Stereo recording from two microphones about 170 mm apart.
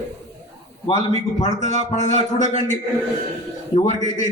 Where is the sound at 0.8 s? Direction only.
40° left (ahead or behind).